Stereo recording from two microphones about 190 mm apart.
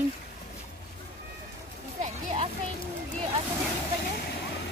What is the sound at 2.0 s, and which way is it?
Children playing, 30° right (ahead or behind).